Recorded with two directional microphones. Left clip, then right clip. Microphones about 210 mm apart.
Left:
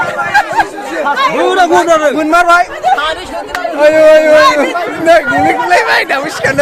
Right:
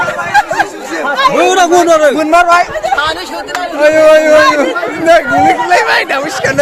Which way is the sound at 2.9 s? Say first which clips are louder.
Right 2 dB; 25° right (ahead or behind).